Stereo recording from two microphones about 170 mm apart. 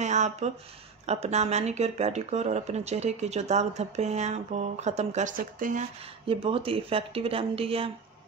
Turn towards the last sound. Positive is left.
turn(degrees=-35)  # may be behind; listen again after turning